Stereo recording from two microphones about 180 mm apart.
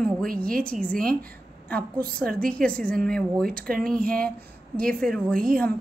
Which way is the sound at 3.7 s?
50° right (ahead or behind).